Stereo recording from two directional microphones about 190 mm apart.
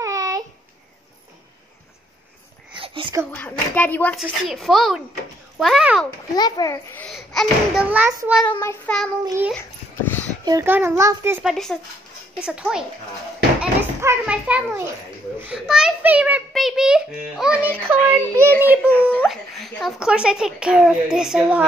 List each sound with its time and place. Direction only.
0.0 s a sound: 20° right (ahead or behind)
2.7 s a sound: 25° right (ahead or behind)
3.3 s a child's voice: 10° left (ahead or behind)
6.3 s a child's voice: 20° left (ahead or behind)
7.1 s a child's voice: centre (ahead or behind)
8.5 s a child's voice: 10° left (ahead or behind)
9.5 s a sound: 10° left (ahead or behind)
10.4 s a child's voice: 15° right (ahead or behind)
11.4 s a child's voice: centre (ahead or behind)